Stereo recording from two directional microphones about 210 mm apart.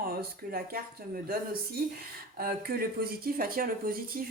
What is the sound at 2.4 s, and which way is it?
Speech, 45° right (ahead or behind).